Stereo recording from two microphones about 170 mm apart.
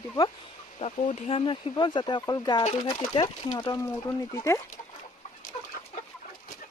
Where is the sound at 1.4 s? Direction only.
30° left (ahead or behind).